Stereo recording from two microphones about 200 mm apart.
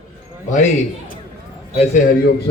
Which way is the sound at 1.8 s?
40° left (ahead or behind).